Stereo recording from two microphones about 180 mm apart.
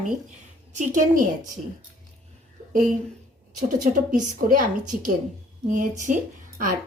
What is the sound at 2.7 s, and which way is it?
Speech, 50° right (ahead or behind).